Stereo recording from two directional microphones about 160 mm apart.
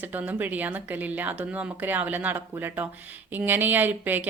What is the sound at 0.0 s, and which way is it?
Speech, 10° right (ahead or behind).